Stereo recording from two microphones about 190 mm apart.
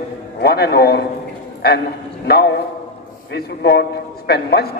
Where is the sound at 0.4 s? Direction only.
60° left (ahead or behind).